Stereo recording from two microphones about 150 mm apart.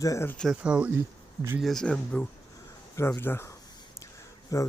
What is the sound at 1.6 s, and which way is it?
Speech, 5° left (ahead or behind).